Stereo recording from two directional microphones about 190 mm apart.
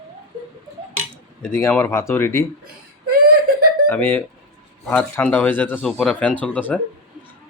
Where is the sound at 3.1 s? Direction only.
55° right (ahead or behind).